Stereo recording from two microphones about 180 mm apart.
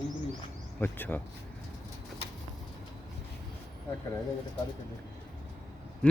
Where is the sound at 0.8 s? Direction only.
10° left (ahead or behind).